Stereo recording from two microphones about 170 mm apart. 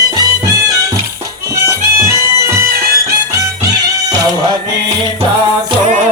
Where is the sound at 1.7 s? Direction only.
15° right (ahead or behind).